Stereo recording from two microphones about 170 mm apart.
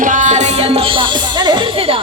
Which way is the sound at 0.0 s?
50° right (ahead or behind).